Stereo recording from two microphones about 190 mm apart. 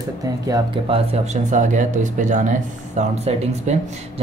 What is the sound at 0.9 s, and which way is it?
A man's voice, 35° right (ahead or behind).